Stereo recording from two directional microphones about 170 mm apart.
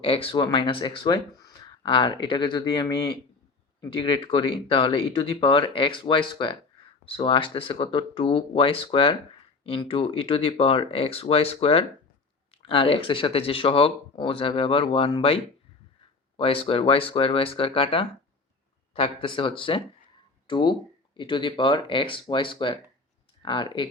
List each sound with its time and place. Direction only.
0.0 s speech: 35° left (ahead or behind)
16.4 s speech: 35° left (ahead or behind)